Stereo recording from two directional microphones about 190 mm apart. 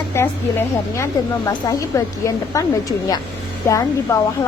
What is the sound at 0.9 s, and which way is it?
A woman's voice, 15° left (ahead or behind).